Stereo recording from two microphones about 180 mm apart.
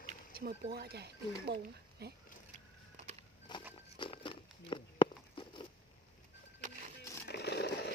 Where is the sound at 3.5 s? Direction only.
25° left (ahead or behind).